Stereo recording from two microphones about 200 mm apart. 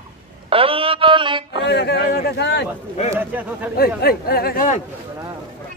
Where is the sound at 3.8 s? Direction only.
50° left (ahead or behind).